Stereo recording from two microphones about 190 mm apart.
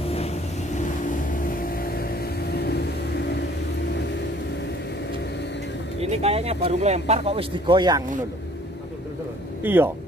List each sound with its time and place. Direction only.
0.0 s vehicle: 30° left (ahead or behind); by 3.4 s 60° left (ahead or behind)
5.9 s speech: 35° right (ahead or behind)
9.6 s speech: 10° right (ahead or behind)